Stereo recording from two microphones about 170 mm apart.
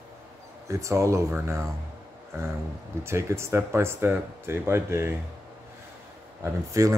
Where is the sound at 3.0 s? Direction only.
15° right (ahead or behind).